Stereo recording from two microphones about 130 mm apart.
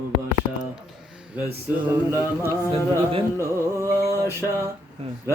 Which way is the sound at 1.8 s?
20° right (ahead or behind).